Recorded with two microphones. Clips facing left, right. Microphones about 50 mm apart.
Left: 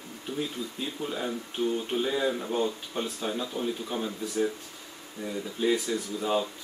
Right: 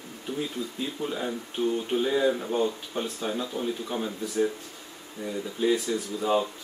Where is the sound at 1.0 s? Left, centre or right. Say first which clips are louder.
Right 1 dB; centre.